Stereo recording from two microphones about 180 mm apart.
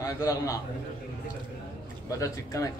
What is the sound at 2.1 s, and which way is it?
Speech, 20° left (ahead or behind).